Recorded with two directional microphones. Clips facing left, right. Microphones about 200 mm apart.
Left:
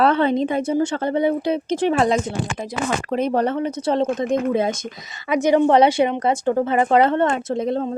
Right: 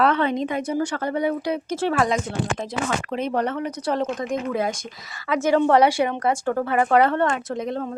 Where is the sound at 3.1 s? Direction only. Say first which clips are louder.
Left 6 dB; 35° left (ahead or behind).